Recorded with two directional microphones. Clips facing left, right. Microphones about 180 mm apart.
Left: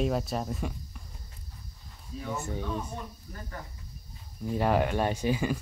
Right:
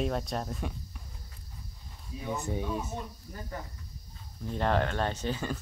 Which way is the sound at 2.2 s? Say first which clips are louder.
Right 1 dB; 15° right (ahead or behind).